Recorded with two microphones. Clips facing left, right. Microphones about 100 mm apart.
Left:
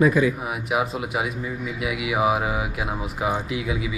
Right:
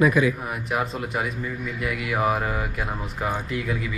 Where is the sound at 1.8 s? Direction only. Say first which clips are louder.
Left 2 dB; 5° left (ahead or behind).